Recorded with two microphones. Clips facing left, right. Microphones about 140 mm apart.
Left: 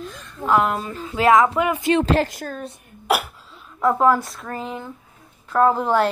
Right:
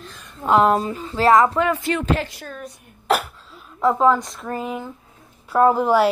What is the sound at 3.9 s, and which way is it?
A woman's voice, 5° left (ahead or behind).